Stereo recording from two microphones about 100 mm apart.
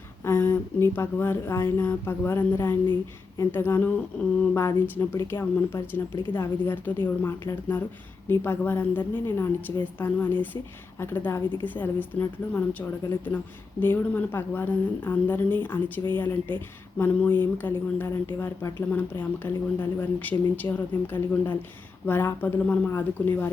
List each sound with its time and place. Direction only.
0.3 s speech: 20° left (ahead or behind)